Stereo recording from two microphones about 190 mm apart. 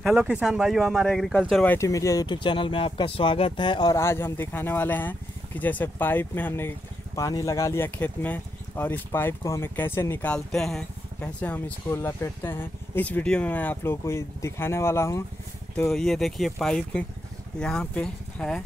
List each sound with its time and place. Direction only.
0.0 s speech: 5° right (ahead or behind); by 15.2 s 15° left (ahead or behind)
15.9 s speech: centre (ahead or behind)